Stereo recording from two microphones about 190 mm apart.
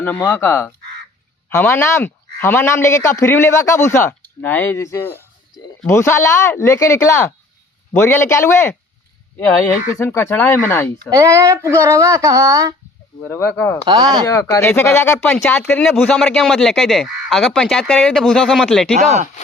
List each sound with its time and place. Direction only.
0.3 s speech: 10° left (ahead or behind)
10.0 s speech: 10° left (ahead or behind)
11.1 s speech: 15° right (ahead or behind)
13.2 s speech: 10° left (ahead or behind)
13.8 s speech: 20° right (ahead or behind)
14.3 s speech: 15° left (ahead or behind)
18.9 s speech: 40° right (ahead or behind)